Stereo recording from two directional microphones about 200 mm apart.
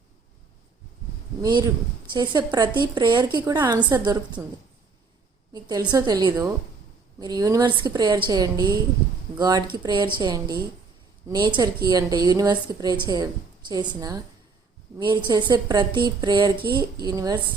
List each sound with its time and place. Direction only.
1.4 s a woman's voice: 20° right (ahead or behind)
5.5 s a woman's voice: 20° right (ahead or behind)